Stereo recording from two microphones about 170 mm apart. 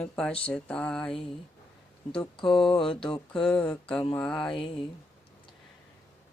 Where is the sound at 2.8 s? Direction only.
30° left (ahead or behind).